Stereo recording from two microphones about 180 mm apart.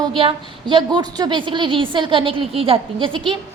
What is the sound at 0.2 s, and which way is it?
A woman's voice, 30° right (ahead or behind).